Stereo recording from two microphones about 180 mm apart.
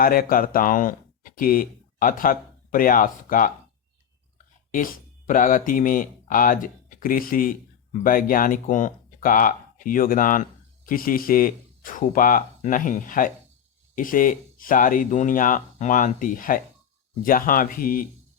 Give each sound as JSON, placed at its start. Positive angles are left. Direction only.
{"t": 0.0, "sound": "speech", "side_deg": 50}
{"t": 4.7, "sound": "speech", "side_deg": 50}